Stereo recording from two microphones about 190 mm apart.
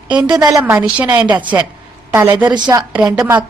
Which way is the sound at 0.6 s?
5° right (ahead or behind).